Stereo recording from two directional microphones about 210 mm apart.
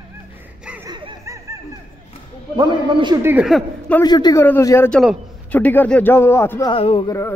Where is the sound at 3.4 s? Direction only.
Centre (ahead or behind).